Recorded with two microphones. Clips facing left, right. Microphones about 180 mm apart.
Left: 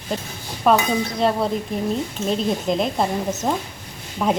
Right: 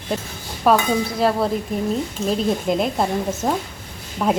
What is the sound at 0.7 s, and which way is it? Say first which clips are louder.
Speech: even; centre (ahead or behind).